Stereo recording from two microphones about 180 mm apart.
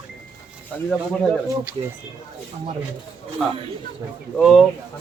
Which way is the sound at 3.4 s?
Centre (ahead or behind).